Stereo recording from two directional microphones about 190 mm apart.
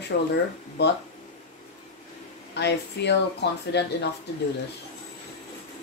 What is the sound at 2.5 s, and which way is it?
Speech, 60° left (ahead or behind).